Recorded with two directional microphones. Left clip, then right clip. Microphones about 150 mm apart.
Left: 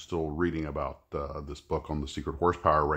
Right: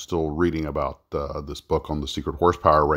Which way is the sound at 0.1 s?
40° right (ahead or behind).